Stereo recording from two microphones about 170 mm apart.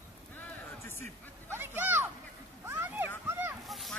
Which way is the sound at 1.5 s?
10° right (ahead or behind).